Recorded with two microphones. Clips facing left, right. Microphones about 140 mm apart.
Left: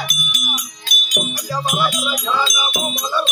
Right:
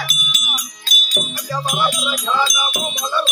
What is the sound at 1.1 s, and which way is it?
Music, 15° left (ahead or behind).